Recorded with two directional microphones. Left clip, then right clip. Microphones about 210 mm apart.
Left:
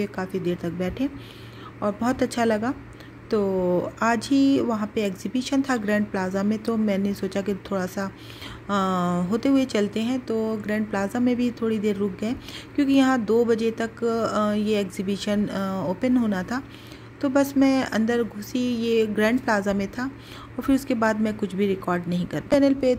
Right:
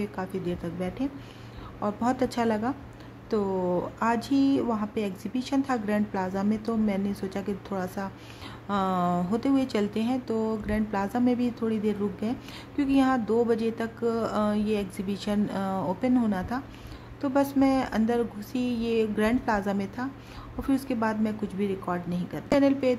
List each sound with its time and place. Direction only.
0.0 s speech: 10° left (ahead or behind)